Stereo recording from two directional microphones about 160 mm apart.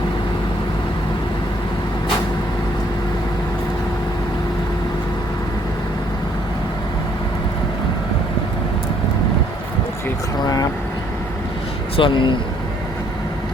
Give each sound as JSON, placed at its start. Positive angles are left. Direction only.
{"t": 10.4, "sound": "vehicle", "side_deg": 25}
{"t": 11.9, "sound": "speech", "side_deg": 30}